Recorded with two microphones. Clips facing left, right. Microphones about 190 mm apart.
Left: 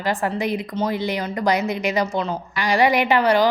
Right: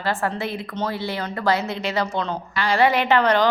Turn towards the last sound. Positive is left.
turn(degrees=10)  # may be behind; listen again after turning